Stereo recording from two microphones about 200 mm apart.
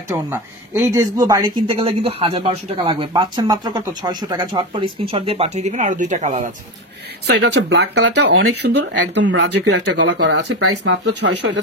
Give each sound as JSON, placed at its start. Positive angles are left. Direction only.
{"t": 0.1, "sound": "speech", "side_deg": -15}
{"t": 7.2, "sound": "speech", "side_deg": -55}